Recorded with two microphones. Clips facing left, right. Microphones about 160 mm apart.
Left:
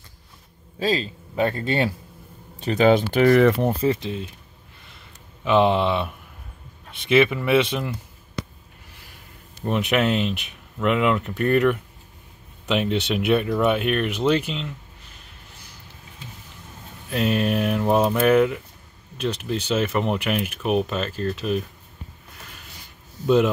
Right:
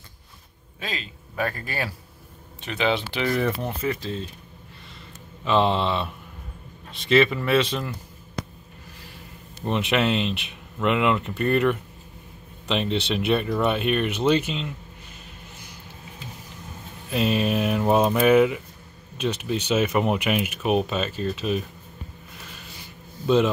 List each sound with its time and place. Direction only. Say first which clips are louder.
0.7 s a man's voice: left 11 dB; 35° left (ahead or behind)
2.6 s speech: left 7 dB; 40° left (ahead or behind)
3.3 s speech: left 8 dB; 90° left
3.8 s speech: left 5 dB; 25° left (ahead or behind)
5.4 s speech: left 3 dB; 10° left (ahead or behind)
7.1 s speech: left 1 dB; 10° left (ahead or behind)
9.7 s speech: left 1 dB; 5° left (ahead or behind)
17.1 s speech: left 1 dB; centre (ahead or behind)
19.7 s speech: right 1 dB; 5° right (ahead or behind)
23.2 s speech: left 2 dB; 5° left (ahead or behind)